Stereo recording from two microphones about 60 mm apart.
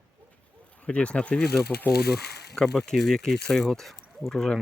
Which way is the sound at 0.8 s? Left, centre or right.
Centre.